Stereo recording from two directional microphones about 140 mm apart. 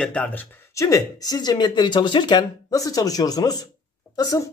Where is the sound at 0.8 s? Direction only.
25° left (ahead or behind).